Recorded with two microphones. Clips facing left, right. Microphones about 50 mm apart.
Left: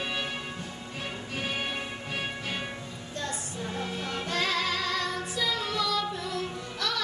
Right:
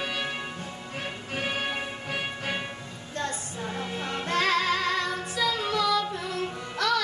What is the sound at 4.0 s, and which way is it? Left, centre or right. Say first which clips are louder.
Music: right 5 dB; right.